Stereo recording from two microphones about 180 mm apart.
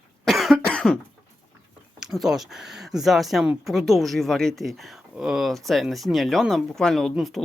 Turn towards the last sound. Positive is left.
turn(degrees=0)  # may be behind; listen again after turning